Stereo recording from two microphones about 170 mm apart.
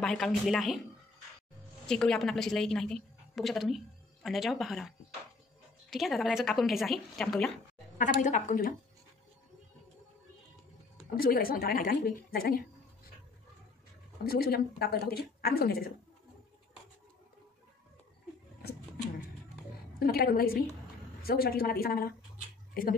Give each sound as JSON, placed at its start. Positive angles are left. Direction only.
{"t": 0.0, "sound": "a woman's voice", "side_deg": 0}
{"t": 1.9, "sound": "a woman's voice", "side_deg": 5}
{"t": 8.0, "sound": "a woman's voice", "side_deg": 50}
{"t": 11.1, "sound": "a woman's voice", "side_deg": 60}
{"t": 14.2, "sound": "speech", "side_deg": 65}
{"t": 20.0, "sound": "speech", "side_deg": 60}